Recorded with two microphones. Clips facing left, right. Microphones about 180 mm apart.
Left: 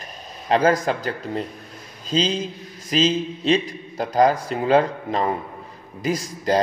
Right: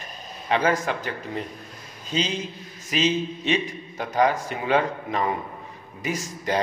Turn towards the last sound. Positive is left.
turn(degrees=35)  # may be behind; listen again after turning